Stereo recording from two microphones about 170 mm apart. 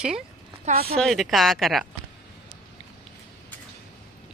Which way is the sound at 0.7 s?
40° right (ahead or behind).